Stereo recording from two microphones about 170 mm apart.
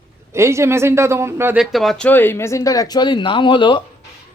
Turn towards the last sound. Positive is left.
turn(degrees=30)  # may be behind; listen again after turning